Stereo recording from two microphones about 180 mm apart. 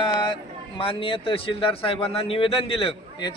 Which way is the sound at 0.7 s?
30° left (ahead or behind).